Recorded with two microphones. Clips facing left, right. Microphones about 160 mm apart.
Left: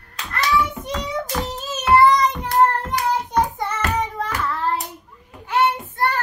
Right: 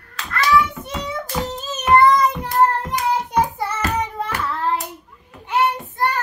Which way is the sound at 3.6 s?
5° right (ahead or behind).